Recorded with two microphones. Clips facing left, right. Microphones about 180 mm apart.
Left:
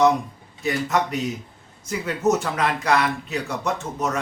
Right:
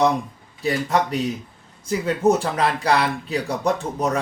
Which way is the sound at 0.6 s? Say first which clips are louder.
Right 2 dB; 30° right (ahead or behind).